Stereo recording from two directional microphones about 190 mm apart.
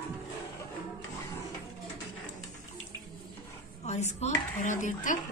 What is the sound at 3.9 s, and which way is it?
Speech, 35° left (ahead or behind).